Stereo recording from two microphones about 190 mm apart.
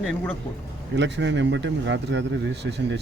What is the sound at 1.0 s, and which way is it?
Speech, 70° right (ahead or behind).